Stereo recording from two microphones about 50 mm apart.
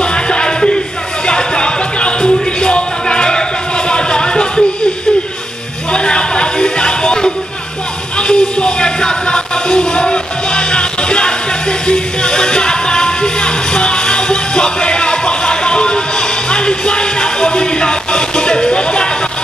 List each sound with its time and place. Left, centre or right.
0.0 s music: centre
5.9 s a sound: centre
8.2 s music: centre